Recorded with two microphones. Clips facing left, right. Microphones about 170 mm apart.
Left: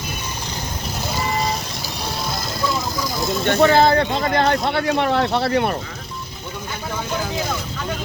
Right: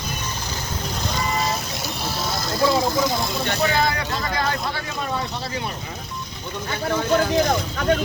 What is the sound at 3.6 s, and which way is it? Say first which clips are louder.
Speech: left 8 dB; 30° left (ahead or behind).